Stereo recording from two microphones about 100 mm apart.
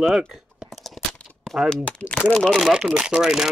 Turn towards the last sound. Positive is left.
turn(degrees=-5)  # may be behind; listen again after turning